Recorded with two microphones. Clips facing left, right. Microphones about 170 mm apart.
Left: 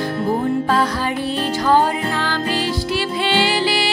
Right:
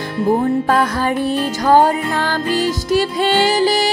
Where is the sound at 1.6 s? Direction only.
45° right (ahead or behind).